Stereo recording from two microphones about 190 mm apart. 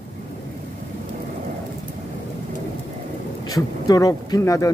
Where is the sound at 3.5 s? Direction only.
20° left (ahead or behind).